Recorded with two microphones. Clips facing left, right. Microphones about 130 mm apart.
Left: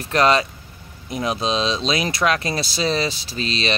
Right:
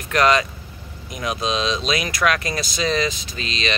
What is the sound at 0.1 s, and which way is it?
Speech, 30° left (ahead or behind).